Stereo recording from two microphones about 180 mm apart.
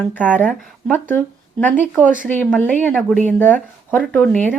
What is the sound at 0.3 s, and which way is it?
Speech, 10° left (ahead or behind).